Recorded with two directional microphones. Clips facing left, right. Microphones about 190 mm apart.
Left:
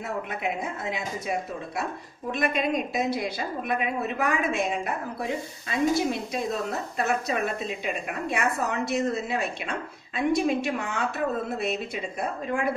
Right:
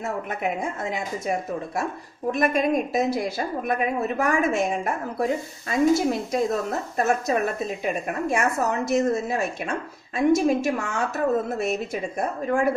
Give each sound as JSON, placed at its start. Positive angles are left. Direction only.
{"t": 0.0, "sound": "a woman's voice", "side_deg": -45}
{"t": 2.3, "sound": "a woman's voice", "side_deg": -45}